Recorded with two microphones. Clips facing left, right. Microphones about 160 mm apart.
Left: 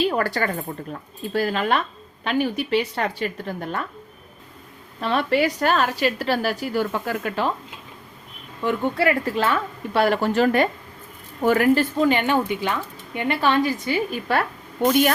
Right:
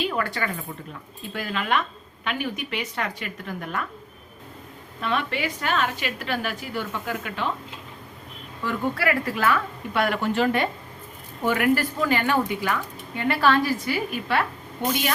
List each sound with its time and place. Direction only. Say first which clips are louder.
0.0 s a woman's voice: left 5 dB; 35° left (ahead or behind)
4.9 s a woman's voice: left 6 dB; 35° left (ahead or behind)
8.6 s a woman's voice: left 4 dB; 25° left (ahead or behind)